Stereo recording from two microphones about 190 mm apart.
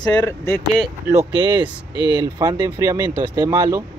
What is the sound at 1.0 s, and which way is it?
Speech, 15° right (ahead or behind).